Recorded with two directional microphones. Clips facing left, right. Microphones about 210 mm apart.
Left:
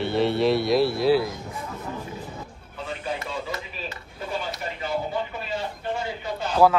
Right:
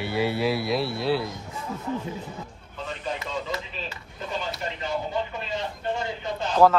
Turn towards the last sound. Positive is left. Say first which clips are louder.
# even
turn(degrees=10)  # may be behind; listen again after turning